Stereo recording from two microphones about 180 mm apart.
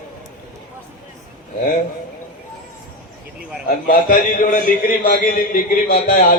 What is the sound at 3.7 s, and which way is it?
A man's voice, 50° left (ahead or behind).